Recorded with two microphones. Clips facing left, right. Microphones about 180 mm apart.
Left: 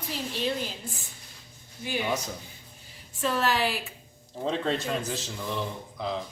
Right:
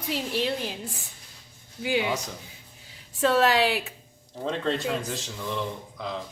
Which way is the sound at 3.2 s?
90° right.